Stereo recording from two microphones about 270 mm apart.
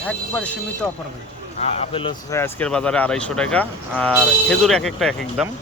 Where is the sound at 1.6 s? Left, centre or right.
Left; by 5.4 s centre.